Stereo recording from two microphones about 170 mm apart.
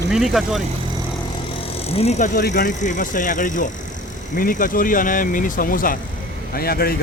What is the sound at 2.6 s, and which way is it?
Speech, 50° left (ahead or behind).